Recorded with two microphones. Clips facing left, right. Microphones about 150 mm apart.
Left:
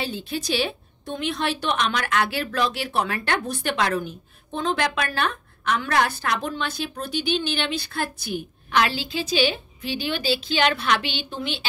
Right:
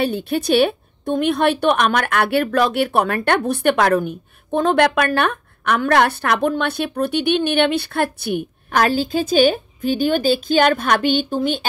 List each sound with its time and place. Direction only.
0.0 s a woman's voice: 60° right (ahead or behind)